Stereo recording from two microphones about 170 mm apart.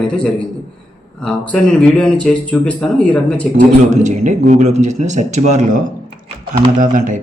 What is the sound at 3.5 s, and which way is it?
A man's voice, 45° right (ahead or behind).